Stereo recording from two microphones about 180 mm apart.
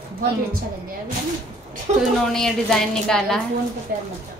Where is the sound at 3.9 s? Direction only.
55° right (ahead or behind).